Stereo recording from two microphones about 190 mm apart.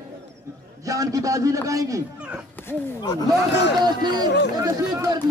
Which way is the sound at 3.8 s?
20° right (ahead or behind).